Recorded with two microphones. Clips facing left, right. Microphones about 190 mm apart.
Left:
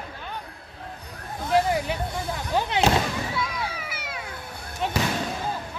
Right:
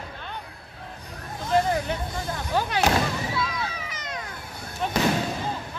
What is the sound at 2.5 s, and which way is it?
Artillery fire, 20° left (ahead or behind).